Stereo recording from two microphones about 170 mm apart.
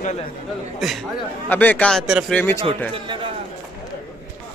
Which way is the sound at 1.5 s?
10° left (ahead or behind).